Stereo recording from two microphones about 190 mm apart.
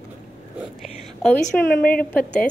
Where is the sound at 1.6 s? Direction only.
50° left (ahead or behind).